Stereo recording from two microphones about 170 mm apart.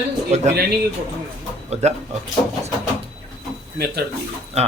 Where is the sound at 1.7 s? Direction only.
40° right (ahead or behind).